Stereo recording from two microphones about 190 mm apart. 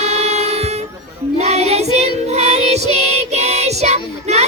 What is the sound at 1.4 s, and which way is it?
Child singing, 35° right (ahead or behind).